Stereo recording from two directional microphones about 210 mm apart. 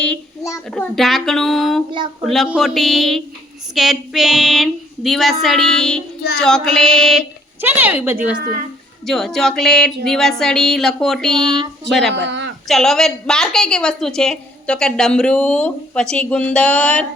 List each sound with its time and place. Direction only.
0.0 s child singing: 10° left (ahead or behind)
0.7 s a woman's voice: centre (ahead or behind)
9.0 s a woman's voice: centre (ahead or behind)
12.1 s a sound: 60° right (ahead or behind)
12.6 s a woman's voice: centre (ahead or behind)